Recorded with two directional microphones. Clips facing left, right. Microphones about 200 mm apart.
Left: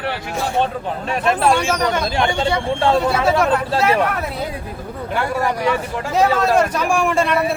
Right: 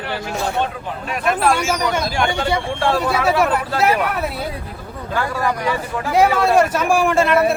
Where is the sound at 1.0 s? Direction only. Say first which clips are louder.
Left 1 dB; 30° left (ahead or behind).